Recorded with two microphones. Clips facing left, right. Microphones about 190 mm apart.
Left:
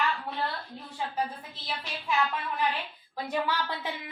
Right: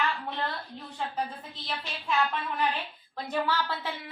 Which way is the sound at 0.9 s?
10° left (ahead or behind).